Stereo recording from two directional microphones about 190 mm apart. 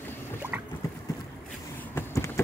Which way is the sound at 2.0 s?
15° left (ahead or behind).